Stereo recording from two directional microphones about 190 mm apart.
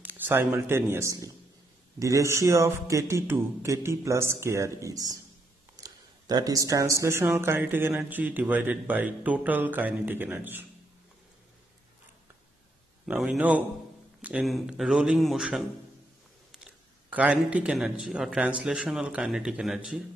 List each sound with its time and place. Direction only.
0.0 s a man's voice: 10° right (ahead or behind)
13.0 s speech: centre (ahead or behind)